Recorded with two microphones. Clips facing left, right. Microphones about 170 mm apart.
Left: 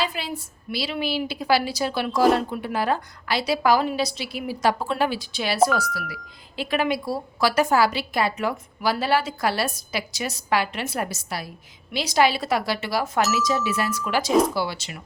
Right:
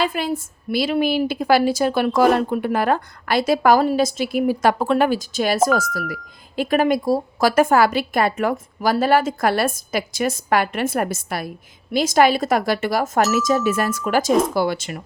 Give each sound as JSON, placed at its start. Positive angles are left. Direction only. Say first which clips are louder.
{"t": 0.0, "sound": "a woman's voice", "louder": "right 6 dB", "side_deg": -50}